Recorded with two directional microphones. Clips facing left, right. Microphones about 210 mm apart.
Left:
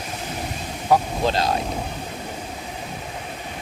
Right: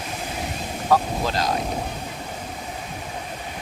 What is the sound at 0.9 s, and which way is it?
Speech, 15° left (ahead or behind).